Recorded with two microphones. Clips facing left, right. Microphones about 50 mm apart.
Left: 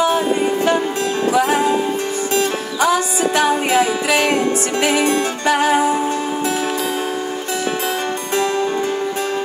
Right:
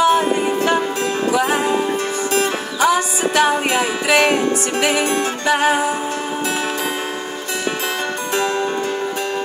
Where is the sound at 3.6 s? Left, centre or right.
Centre.